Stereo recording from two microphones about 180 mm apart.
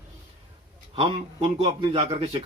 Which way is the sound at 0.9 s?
30° right (ahead or behind).